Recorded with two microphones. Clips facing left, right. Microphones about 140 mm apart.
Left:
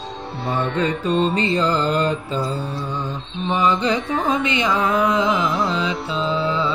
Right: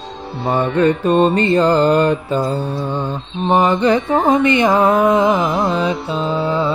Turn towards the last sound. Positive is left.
turn(degrees=-55)  # may be behind; listen again after turning